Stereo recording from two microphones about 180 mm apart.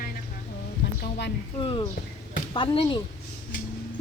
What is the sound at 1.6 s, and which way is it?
Speech, 25° left (ahead or behind).